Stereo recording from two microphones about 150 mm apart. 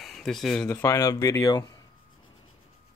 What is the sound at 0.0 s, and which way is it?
Speech, centre (ahead or behind).